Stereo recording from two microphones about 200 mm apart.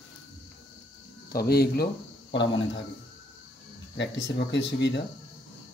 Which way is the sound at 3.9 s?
60° left (ahead or behind).